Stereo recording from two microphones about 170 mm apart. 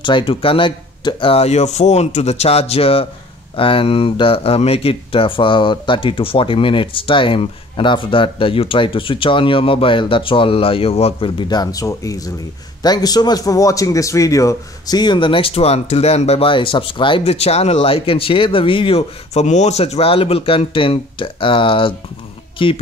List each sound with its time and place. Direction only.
0.0 s a man's voice: 30° left (ahead or behind)